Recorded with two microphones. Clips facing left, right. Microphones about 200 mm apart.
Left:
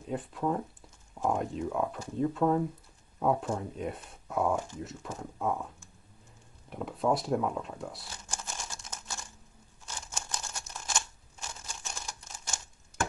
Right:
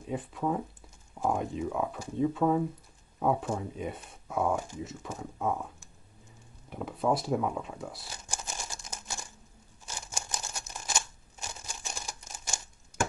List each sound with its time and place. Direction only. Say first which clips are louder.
0.0 s speech: even; centre (ahead or behind)
8.3 s a sound: right 1 dB; 15° right (ahead or behind)
9.8 s scissors: right 1 dB; 15° right (ahead or behind)